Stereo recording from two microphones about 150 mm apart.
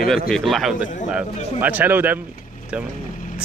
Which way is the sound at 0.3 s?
Centre (ahead or behind).